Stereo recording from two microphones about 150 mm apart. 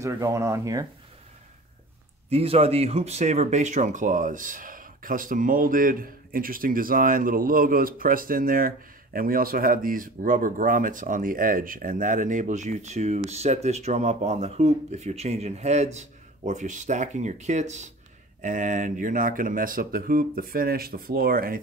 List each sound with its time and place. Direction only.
0.0 s speech: 20° right (ahead or behind)
2.2 s speech: 40° right (ahead or behind); by 21.5 s 80° right